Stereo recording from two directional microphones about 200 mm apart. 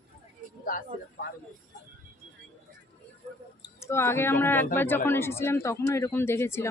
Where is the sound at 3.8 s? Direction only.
10° left (ahead or behind).